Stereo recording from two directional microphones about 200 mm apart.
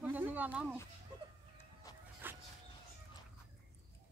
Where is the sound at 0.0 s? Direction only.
10° right (ahead or behind).